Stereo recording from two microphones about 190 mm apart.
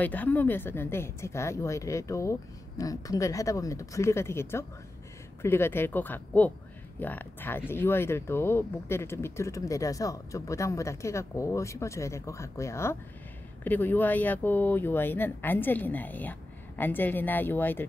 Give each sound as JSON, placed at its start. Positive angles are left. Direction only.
{"t": 0.0, "sound": "speech", "side_deg": 10}